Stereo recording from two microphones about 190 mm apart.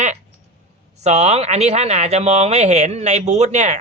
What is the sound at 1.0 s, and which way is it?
Speech, 35° right (ahead or behind).